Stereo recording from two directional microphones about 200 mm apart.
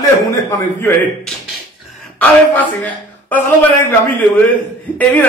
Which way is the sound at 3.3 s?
10° left (ahead or behind).